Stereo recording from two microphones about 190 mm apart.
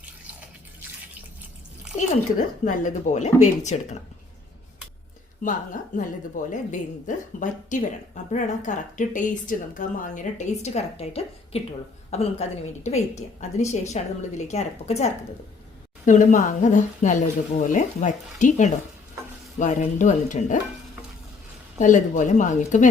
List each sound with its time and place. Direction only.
2.6 s speech: 40° left (ahead or behind)
5.4 s speech: 45° left (ahead or behind)
21.8 s speech: 40° left (ahead or behind)